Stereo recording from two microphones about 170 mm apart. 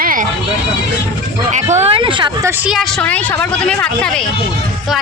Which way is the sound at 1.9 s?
30° right (ahead or behind).